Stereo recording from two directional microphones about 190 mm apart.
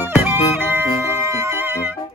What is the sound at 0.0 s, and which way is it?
Music, 10° right (ahead or behind).